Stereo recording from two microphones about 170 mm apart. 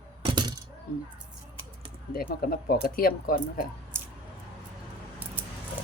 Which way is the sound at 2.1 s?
60° left (ahead or behind).